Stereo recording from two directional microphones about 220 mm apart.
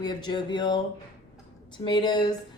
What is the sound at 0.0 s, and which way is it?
Speech, 20° left (ahead or behind).